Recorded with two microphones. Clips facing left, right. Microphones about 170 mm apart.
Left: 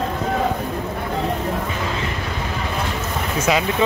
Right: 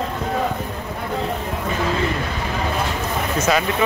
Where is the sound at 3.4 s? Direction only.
15° left (ahead or behind).